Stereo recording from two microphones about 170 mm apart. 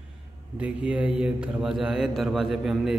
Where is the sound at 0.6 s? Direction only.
5° right (ahead or behind).